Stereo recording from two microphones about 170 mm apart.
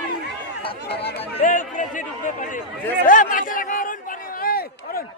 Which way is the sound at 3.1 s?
50° left (ahead or behind).